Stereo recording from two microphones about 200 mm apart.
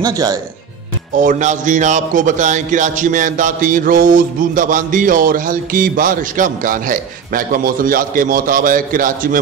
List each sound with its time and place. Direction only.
0.0 s speech: 20° right (ahead or behind)
1.1 s speech: 40° right (ahead or behind)